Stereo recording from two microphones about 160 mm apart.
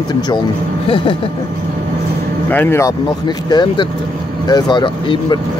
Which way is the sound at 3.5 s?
25° left (ahead or behind).